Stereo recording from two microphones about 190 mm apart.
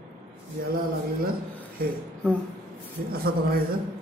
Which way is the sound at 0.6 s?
50° right (ahead or behind).